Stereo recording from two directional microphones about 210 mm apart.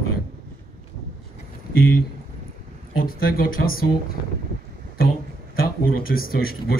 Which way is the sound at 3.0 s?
45° left (ahead or behind).